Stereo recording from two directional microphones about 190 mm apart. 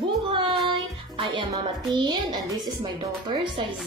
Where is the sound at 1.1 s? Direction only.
25° right (ahead or behind).